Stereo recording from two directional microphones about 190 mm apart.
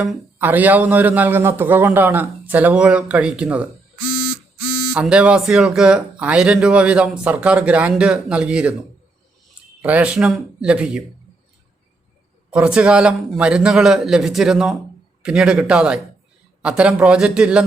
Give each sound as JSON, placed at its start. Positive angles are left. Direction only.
{"t": 0.0, "sound": "a man's voice", "side_deg": -10}
{"t": 4.1, "sound": "a sound", "side_deg": 50}
{"t": 4.9, "sound": "speech", "side_deg": -5}
{"t": 9.8, "sound": "speech", "side_deg": -5}
{"t": 12.5, "sound": "speech", "side_deg": -5}